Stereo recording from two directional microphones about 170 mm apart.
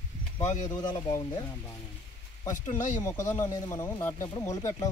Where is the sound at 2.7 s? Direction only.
45° left (ahead or behind).